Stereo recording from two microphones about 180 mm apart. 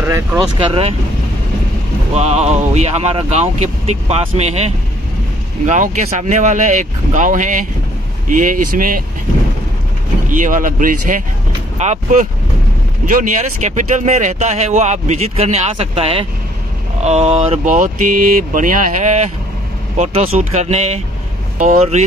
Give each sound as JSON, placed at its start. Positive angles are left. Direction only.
{"t": 0.0, "sound": "speech", "side_deg": -10}
{"t": 0.6, "sound": "speech", "side_deg": -30}
{"t": 2.1, "sound": "speech", "side_deg": -35}
{"t": 10.3, "sound": "speech", "side_deg": -45}